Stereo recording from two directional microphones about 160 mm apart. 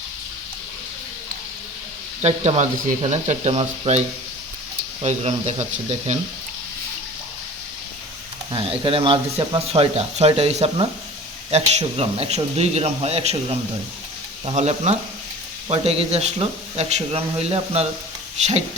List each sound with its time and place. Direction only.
2.2 s speech: 45° right (ahead or behind)
5.0 s speech: 45° right (ahead or behind)
8.8 s speech: 35° right (ahead or behind)